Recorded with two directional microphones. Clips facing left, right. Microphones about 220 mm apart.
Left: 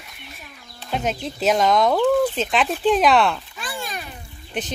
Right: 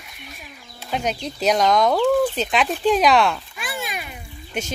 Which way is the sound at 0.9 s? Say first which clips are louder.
Even; centre (ahead or behind).